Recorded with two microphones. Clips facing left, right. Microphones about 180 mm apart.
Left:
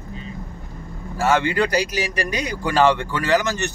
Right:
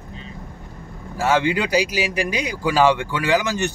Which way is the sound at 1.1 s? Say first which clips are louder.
Even; 10° right (ahead or behind).